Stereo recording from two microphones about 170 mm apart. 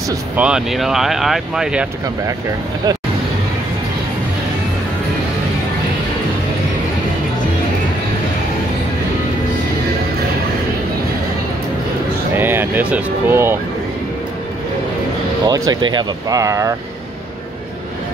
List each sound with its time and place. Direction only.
0.4 s speech: 5° right (ahead or behind)
12.4 s speech: 10° right (ahead or behind)
15.4 s speech: 25° right (ahead or behind)